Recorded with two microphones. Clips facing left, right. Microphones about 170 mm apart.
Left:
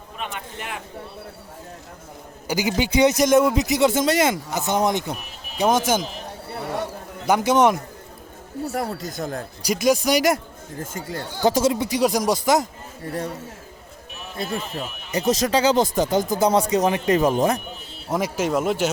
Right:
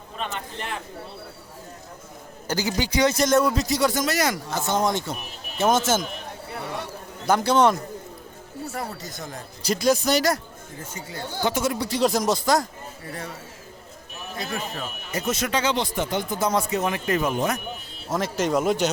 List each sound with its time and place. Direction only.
0.2 s speech: 10° left (ahead or behind)
2.5 s speech: 15° left (ahead or behind)
7.3 s speech: 15° left (ahead or behind)
9.1 s speech: 60° left (ahead or behind)
9.6 s speech: 10° left (ahead or behind)
10.8 s speech: 50° left (ahead or behind)
11.7 s speech: 20° left (ahead or behind)
13.1 s speech: 35° left (ahead or behind)
14.3 s speech: 30° left (ahead or behind)
18.1 s speech: 10° left (ahead or behind)